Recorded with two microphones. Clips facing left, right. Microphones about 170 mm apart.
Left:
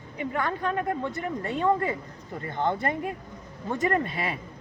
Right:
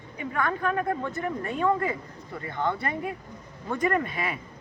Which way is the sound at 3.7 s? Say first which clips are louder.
Even; 35° left (ahead or behind).